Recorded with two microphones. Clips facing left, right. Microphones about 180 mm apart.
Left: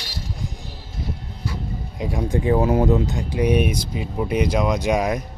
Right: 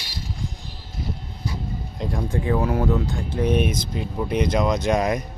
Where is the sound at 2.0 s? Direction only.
10° left (ahead or behind).